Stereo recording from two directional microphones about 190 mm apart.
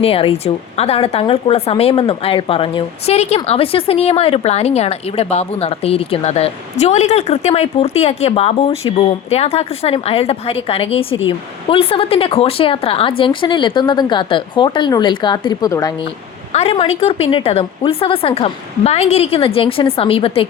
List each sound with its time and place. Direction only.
0.0 s speech: 30° left (ahead or behind)
16.5 s speech: 35° left (ahead or behind)